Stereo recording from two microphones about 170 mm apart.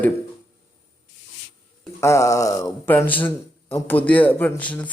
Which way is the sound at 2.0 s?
15° left (ahead or behind).